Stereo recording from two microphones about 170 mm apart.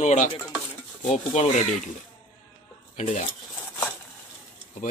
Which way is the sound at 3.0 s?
40° left (ahead or behind).